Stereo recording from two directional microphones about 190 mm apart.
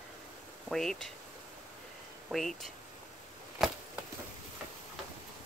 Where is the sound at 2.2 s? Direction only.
Centre (ahead or behind).